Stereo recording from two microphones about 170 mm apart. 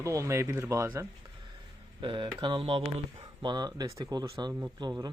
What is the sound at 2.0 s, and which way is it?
Speech, 25° right (ahead or behind).